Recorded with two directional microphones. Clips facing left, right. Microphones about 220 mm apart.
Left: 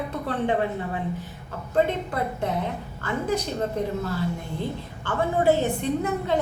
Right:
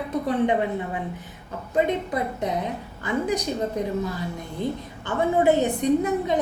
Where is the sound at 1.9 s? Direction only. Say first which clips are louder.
Right 2 dB; 15° right (ahead or behind).